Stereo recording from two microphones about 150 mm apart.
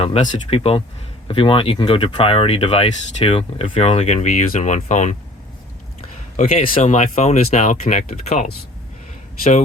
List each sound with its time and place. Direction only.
0.0 s speech: 50° left (ahead or behind)
6.3 s speech: 45° left (ahead or behind)